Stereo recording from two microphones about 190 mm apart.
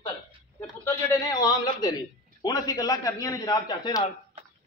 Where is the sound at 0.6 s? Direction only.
20° left (ahead or behind).